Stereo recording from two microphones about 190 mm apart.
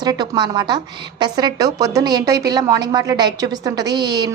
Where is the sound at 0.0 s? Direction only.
20° right (ahead or behind).